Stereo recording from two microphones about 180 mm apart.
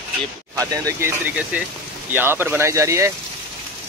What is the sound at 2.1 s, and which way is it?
Speech, 10° right (ahead or behind).